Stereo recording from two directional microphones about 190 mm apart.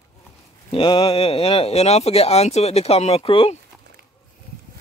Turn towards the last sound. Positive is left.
turn(degrees=30)  # may be behind; listen again after turning